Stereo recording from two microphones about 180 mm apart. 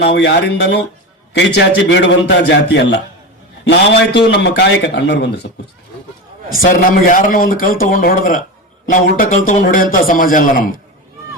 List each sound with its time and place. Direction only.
0.0 s a man's voice: 70° left (ahead or behind)
6.6 s a man's voice: 45° left (ahead or behind)